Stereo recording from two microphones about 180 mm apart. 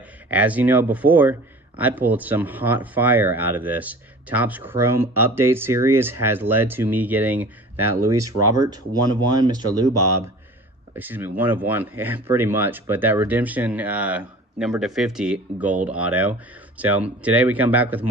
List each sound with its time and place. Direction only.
0.3 s speech: 10° right (ahead or behind)
8.1 s speech: 20° right (ahead or behind)
11.0 s speech: 10° right (ahead or behind)